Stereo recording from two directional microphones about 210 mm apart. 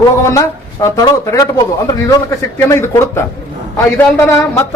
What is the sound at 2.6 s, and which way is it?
Speech, 10° left (ahead or behind).